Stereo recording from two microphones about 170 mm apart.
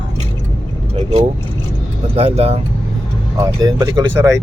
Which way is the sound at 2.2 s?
35° right (ahead or behind).